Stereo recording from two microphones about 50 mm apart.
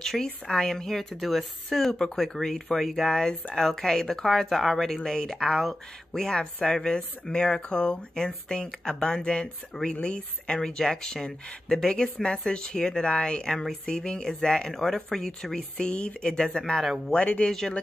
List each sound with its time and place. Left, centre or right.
0.0 s speech: centre